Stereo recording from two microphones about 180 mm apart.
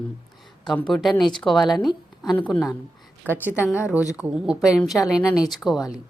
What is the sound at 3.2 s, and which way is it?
A woman's voice, 10° right (ahead or behind).